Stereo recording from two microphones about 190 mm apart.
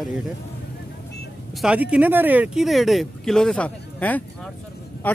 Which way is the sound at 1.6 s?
5° right (ahead or behind).